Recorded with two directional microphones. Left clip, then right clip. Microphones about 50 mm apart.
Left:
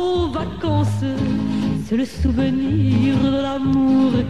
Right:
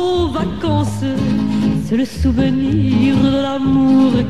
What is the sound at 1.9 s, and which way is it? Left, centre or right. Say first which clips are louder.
Music: right 3 dB; left.